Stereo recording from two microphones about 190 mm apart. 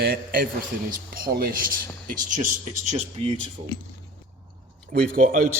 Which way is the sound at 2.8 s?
35° right (ahead or behind).